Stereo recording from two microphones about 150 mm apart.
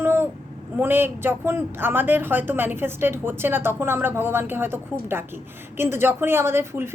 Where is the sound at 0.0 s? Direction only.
15° right (ahead or behind).